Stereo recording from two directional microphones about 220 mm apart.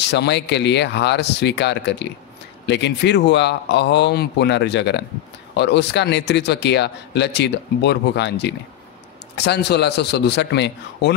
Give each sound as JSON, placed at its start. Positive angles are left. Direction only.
{"t": 0.0, "sound": "speech", "side_deg": 50}